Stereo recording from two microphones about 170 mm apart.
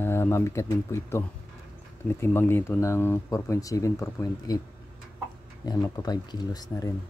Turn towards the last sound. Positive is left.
turn(degrees=20)  # may be behind; listen again after turning